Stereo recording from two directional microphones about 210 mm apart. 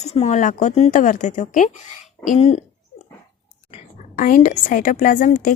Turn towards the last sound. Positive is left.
turn(degrees=40)  # may be behind; listen again after turning